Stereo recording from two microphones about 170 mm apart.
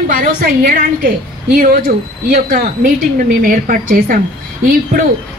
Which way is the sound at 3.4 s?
55° right (ahead or behind).